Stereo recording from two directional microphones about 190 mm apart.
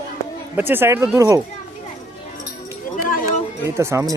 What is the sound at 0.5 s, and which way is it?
Speech, 10° right (ahead or behind).